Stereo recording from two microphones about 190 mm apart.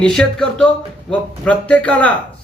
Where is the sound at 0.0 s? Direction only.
5° left (ahead or behind).